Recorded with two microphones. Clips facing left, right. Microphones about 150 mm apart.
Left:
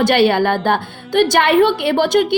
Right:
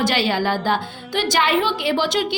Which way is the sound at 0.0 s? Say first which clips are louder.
Left 7 dB; 60° left (ahead or behind).